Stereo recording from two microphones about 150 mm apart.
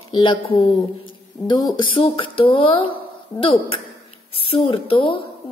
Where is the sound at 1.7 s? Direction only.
35° left (ahead or behind).